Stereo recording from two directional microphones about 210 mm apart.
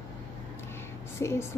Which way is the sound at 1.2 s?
15° left (ahead or behind).